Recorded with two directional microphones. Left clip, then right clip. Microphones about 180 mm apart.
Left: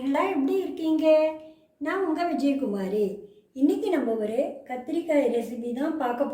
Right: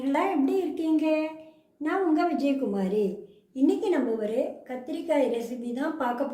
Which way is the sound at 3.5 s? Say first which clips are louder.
Even; 50° right (ahead or behind).